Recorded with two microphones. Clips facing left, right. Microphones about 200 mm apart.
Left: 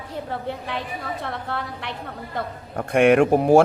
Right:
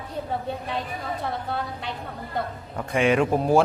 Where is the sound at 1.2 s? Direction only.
70° left (ahead or behind).